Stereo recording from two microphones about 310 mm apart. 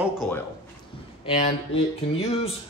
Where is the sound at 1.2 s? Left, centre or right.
Left.